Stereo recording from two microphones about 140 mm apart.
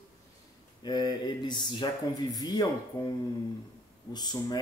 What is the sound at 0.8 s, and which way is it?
Speech, 30° left (ahead or behind).